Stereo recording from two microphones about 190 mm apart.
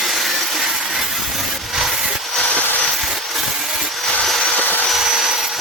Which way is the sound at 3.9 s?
Centre (ahead or behind).